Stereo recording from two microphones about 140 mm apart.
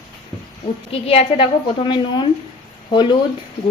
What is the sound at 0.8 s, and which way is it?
A woman's voice, 45° left (ahead or behind).